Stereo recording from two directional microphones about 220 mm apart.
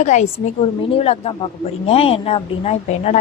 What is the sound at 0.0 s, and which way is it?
Speech, 30° left (ahead or behind).